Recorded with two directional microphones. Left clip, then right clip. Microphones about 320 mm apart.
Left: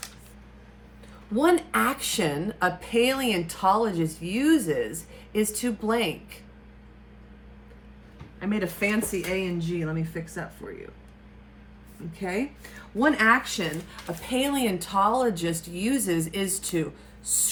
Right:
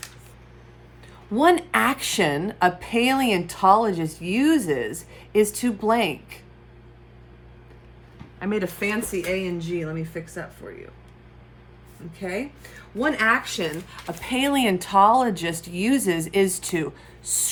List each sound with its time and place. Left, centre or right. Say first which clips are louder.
1.5 s speech: right 4 dB; centre
8.4 s speech: right 2 dB; centre
12.1 s speech: even; centre
14.3 s speech: right 4 dB; centre